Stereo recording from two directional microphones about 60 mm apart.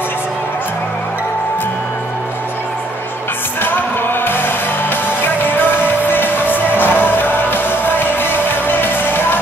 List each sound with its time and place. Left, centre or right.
3.6 s music: left